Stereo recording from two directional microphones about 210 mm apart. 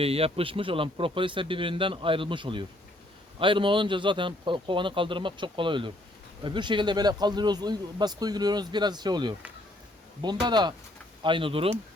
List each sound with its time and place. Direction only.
0.0 s speech: 30° right (ahead or behind)